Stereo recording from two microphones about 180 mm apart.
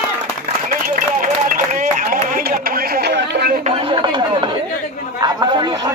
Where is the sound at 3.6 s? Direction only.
30° right (ahead or behind).